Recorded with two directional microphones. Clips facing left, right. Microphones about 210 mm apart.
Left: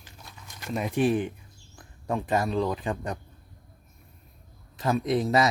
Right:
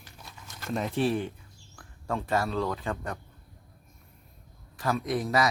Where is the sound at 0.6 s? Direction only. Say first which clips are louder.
Left 2 dB; 10° left (ahead or behind).